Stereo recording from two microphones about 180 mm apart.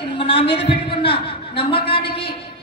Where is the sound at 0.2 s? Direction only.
30° left (ahead or behind).